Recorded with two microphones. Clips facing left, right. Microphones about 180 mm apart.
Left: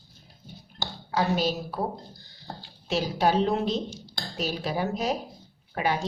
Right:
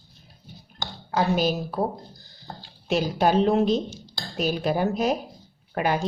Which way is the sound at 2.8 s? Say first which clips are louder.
Right 3 dB; 55° right (ahead or behind).